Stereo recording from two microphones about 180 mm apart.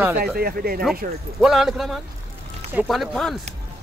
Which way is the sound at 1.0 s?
50° right (ahead or behind).